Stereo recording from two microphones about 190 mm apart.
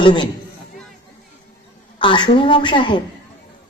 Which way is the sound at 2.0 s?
25° left (ahead or behind).